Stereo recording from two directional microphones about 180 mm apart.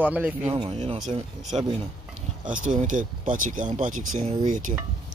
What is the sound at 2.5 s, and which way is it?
Speech, 45° right (ahead or behind).